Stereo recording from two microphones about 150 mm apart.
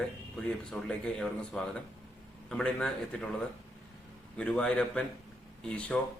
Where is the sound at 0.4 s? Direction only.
5° left (ahead or behind).